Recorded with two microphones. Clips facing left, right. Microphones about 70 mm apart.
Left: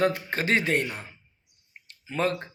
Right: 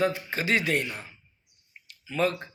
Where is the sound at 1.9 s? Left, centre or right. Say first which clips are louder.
Even; left.